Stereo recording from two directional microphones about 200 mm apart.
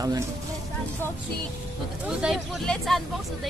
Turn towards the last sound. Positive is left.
turn(degrees=0)  # may be behind; listen again after turning